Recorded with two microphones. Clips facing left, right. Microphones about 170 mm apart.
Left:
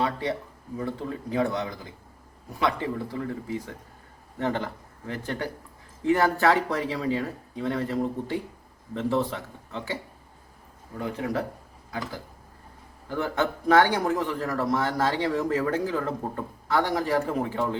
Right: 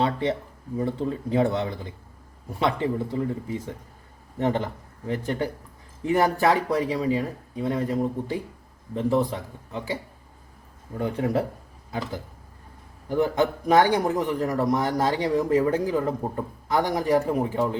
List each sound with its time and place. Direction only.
0.0 s a sound: 25° right (ahead or behind)
0.8 s a man's voice: 25° right (ahead or behind)
10.9 s a man's voice: 30° right (ahead or behind)